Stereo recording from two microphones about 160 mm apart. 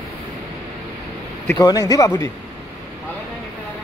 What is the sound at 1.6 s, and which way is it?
Speech, 25° left (ahead or behind).